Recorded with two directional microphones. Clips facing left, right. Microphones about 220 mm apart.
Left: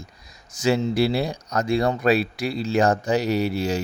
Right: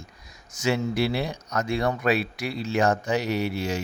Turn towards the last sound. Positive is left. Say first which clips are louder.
# left 4 dB
turn(degrees=35)  # may be behind; listen again after turning